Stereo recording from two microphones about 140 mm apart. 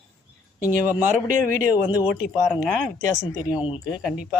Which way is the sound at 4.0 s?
5° right (ahead or behind).